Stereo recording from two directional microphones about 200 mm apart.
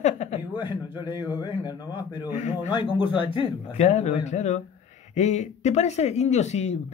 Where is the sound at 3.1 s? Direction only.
25° left (ahead or behind).